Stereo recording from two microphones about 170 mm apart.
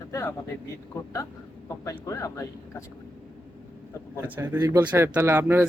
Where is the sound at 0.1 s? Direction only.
15° left (ahead or behind).